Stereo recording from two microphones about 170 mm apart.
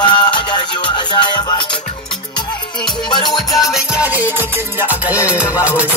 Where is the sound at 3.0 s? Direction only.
25° left (ahead or behind).